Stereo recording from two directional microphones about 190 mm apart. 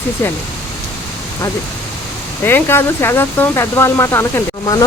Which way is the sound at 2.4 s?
10° left (ahead or behind).